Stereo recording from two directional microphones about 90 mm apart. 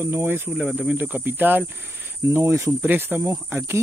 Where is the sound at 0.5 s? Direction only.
10° right (ahead or behind).